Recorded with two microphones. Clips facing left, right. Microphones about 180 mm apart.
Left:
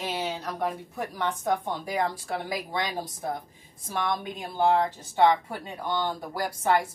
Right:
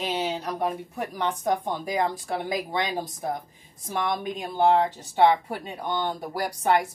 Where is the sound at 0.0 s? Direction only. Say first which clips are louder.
Right 3 dB; 15° right (ahead or behind).